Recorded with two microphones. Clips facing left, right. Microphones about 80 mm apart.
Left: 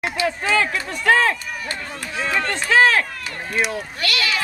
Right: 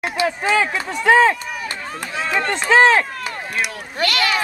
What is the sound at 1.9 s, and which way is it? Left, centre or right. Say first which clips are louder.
Speech: right 1 dB; right.